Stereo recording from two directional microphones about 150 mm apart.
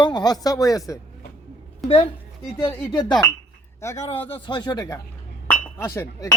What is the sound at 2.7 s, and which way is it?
Speech, 15° left (ahead or behind).